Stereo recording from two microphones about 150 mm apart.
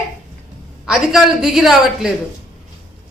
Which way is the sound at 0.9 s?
Centre (ahead or behind).